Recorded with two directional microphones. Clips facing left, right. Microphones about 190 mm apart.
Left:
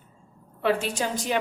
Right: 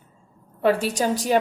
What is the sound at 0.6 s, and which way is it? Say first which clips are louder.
Speech: right 4 dB; 40° right (ahead or behind).